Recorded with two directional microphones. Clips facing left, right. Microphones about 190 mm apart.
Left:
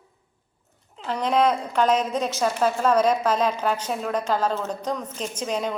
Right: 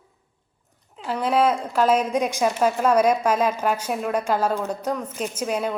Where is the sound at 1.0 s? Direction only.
5° right (ahead or behind).